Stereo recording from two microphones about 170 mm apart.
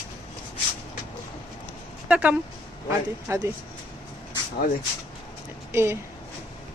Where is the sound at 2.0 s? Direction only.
10° right (ahead or behind).